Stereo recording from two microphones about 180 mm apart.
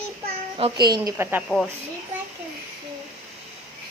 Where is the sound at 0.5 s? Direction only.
30° right (ahead or behind).